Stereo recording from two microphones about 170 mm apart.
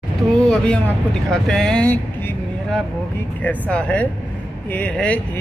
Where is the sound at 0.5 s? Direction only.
5° left (ahead or behind).